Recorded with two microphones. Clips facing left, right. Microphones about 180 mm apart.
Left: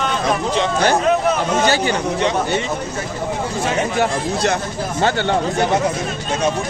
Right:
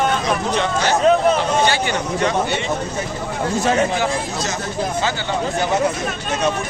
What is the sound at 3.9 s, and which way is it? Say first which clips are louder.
Speech: left 3 dB; 55° left (ahead or behind).